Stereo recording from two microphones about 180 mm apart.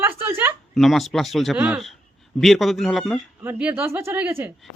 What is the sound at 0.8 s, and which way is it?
Speech, centre (ahead or behind).